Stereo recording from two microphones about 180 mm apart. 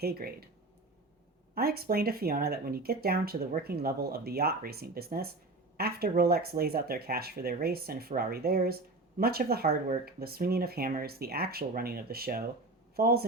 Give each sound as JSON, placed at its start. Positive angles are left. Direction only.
{"t": 0.0, "sound": "speech", "side_deg": -60}
{"t": 1.5, "sound": "speech", "side_deg": -60}